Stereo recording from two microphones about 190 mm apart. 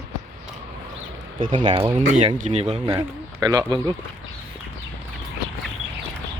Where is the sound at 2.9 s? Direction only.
20° right (ahead or behind).